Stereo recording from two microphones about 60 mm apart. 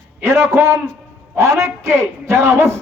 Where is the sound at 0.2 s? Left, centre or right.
Right.